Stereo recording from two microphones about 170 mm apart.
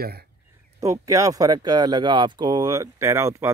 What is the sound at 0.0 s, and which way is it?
Speech, 65° right (ahead or behind).